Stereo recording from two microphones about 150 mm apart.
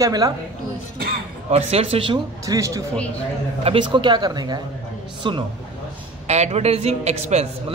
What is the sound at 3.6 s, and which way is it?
A man's voice, 35° right (ahead or behind).